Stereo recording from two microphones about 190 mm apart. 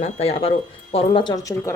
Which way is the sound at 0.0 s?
30° left (ahead or behind).